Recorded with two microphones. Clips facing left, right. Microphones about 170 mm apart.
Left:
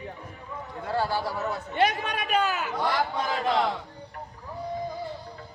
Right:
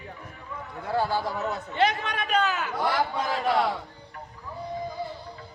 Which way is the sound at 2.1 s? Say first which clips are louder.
Left 1 dB; 10° left (ahead or behind).